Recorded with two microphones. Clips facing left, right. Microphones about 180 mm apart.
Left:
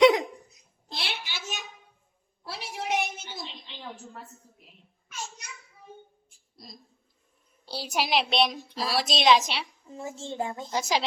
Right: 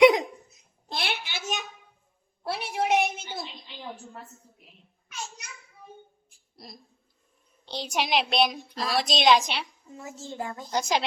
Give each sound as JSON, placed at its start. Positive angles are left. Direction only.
{"t": 0.0, "sound": "laughter", "side_deg": -20}
{"t": 0.9, "sound": "a sound", "side_deg": -55}
{"t": 7.6, "sound": "a child's voice", "side_deg": 5}
{"t": 9.9, "sound": "a child's voice", "side_deg": 30}
{"t": 10.7, "sound": "a child's voice", "side_deg": 0}